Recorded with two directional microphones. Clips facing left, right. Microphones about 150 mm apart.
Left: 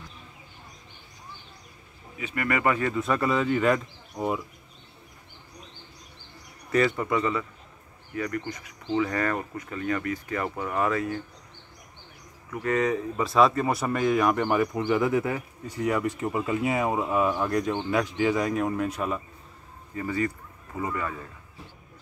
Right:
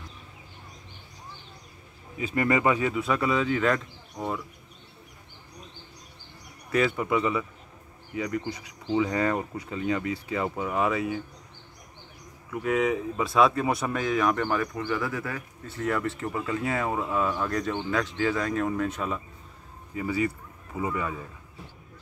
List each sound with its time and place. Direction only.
2.1 s speech: 30° right (ahead or behind); by 4.4 s 10° left (ahead or behind)
6.7 s speech: 5° right (ahead or behind)
12.4 s speech: 5° right (ahead or behind)
19.9 s a man's voice: 10° right (ahead or behind)